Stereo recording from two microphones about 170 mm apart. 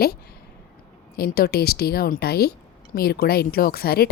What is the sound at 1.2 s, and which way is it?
A woman's voice, 65° left (ahead or behind).